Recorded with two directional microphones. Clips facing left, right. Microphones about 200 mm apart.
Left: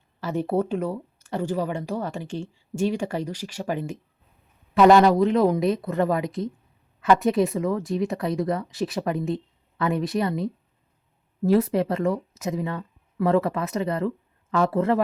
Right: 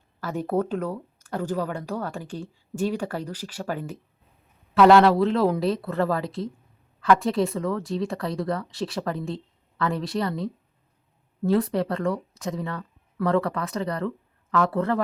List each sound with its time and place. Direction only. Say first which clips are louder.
0.2 s speech: left 1 dB; 10° left (ahead or behind)
11.5 s speech: left 2 dB; 20° left (ahead or behind)